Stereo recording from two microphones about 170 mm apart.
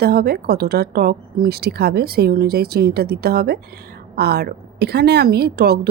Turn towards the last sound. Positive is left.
turn(degrees=-70)  # may be behind; listen again after turning